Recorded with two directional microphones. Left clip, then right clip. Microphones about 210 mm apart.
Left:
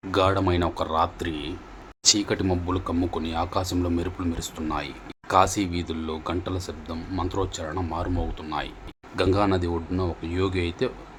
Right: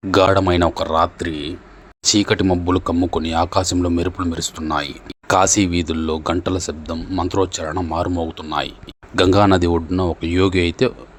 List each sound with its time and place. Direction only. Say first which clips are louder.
0.1 s speech: right 8 dB; 35° right (ahead or behind)
2.1 s speech: right 9 dB; 35° right (ahead or behind)